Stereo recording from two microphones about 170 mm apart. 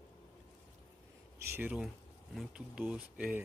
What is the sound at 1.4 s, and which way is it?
Speech, 10° right (ahead or behind).